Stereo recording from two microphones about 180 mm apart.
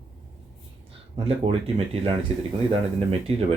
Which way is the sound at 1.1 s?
30° right (ahead or behind).